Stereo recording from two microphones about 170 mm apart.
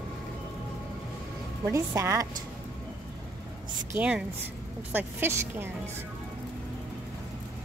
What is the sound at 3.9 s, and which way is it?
A woman's voice, 10° right (ahead or behind).